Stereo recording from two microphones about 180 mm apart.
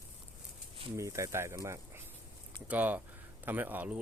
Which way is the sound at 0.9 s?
15° right (ahead or behind).